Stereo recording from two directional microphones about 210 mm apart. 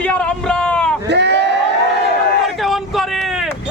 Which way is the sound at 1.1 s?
55° right (ahead or behind).